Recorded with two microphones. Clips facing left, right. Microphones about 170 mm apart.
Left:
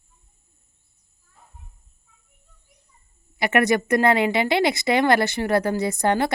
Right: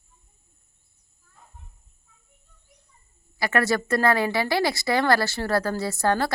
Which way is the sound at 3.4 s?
20° left (ahead or behind).